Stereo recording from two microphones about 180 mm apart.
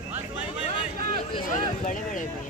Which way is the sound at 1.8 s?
45° left (ahead or behind).